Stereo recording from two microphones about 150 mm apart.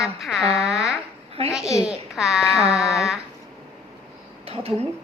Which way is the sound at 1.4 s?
40° right (ahead or behind).